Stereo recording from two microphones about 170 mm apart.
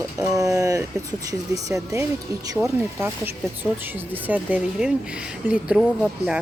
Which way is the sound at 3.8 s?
10° right (ahead or behind).